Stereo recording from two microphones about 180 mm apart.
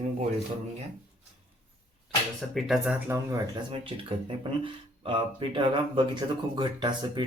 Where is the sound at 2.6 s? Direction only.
Centre (ahead or behind).